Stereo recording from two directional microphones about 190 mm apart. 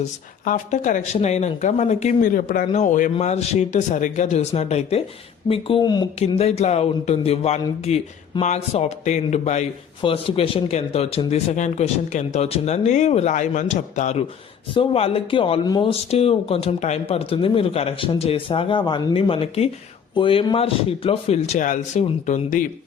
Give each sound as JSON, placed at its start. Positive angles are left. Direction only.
{"t": 0.4, "sound": "a man's voice", "side_deg": 45}
{"t": 6.1, "sound": "a man's voice", "side_deg": 35}